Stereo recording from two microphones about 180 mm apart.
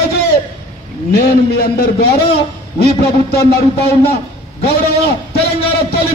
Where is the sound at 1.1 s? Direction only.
60° left (ahead or behind).